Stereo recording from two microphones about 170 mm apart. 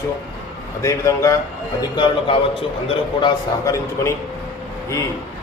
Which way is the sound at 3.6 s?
15° left (ahead or behind).